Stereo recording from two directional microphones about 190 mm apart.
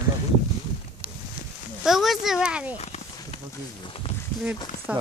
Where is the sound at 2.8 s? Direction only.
35° left (ahead or behind).